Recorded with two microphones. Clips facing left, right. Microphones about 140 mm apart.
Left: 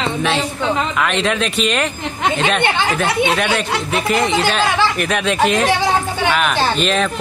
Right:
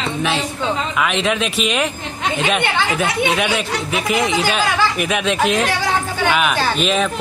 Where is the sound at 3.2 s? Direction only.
Centre (ahead or behind).